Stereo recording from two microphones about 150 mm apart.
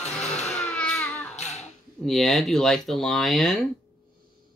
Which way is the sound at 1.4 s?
45° left (ahead or behind).